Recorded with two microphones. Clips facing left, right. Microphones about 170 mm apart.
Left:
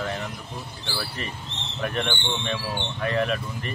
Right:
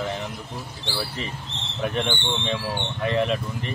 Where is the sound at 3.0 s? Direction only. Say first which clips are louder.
Right 2 dB; 20° right (ahead or behind).